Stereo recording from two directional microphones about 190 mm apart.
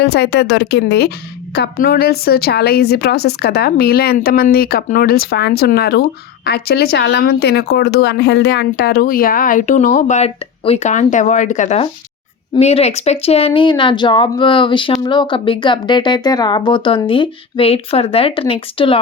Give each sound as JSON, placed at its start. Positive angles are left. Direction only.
{"t": 0.0, "sound": "a woman's voice", "side_deg": 60}